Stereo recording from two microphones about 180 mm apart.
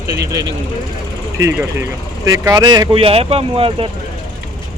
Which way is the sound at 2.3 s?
20° right (ahead or behind).